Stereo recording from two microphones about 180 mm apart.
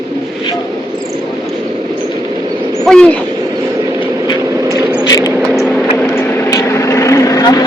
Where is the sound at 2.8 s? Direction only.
5° left (ahead or behind).